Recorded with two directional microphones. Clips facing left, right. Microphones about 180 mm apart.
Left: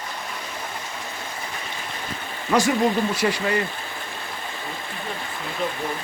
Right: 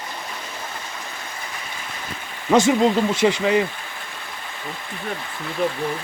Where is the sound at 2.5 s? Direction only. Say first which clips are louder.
Right 4 dB; 20° right (ahead or behind).